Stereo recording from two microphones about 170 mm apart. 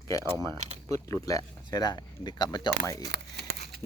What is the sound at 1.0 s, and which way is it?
Speech, 20° left (ahead or behind).